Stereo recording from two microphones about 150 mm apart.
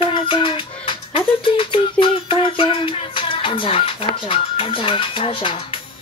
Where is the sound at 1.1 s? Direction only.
35° left (ahead or behind).